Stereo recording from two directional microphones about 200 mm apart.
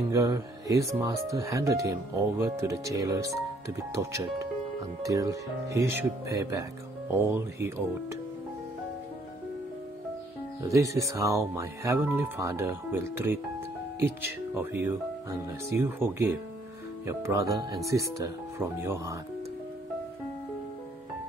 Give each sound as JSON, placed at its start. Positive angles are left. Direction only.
{"t": 0.1, "sound": "speech", "side_deg": -15}
{"t": 10.6, "sound": "speech", "side_deg": -15}